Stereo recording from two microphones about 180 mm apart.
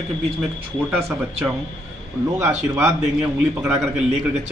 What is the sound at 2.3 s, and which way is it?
Speech, 10° right (ahead or behind).